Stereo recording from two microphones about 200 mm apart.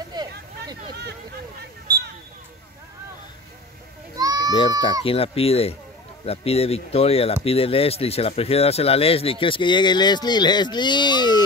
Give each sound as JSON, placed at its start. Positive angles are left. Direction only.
{"t": 0.1, "sound": "a sound", "side_deg": -20}
{"t": 4.2, "sound": "children playing", "side_deg": -20}
{"t": 5.0, "sound": "speech", "side_deg": 30}